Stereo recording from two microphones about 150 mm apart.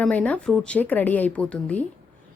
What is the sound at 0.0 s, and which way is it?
A woman's voice, 10° left (ahead or behind).